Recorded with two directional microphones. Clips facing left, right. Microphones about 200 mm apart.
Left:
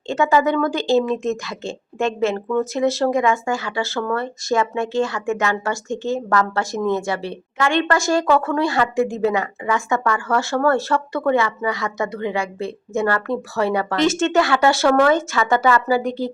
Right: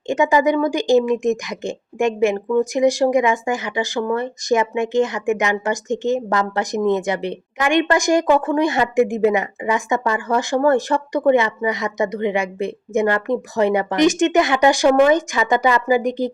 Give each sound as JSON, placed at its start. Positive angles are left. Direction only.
{"t": 0.1, "sound": "speech", "side_deg": -15}